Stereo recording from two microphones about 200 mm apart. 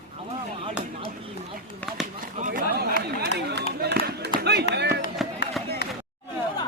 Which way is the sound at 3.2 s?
55° right (ahead or behind).